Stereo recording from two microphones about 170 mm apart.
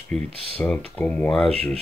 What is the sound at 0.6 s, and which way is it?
Speech, 5° left (ahead or behind).